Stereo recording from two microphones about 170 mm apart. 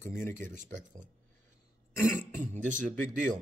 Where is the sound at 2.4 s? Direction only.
50° right (ahead or behind).